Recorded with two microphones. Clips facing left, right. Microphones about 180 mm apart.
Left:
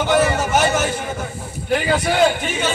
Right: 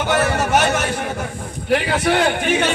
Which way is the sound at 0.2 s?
65° right (ahead or behind).